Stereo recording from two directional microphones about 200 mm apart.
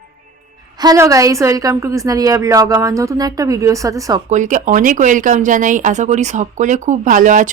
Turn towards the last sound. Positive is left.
turn(degrees=-40)  # may be behind; listen again after turning